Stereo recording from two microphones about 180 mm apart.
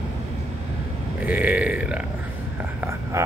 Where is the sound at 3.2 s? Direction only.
15° right (ahead or behind).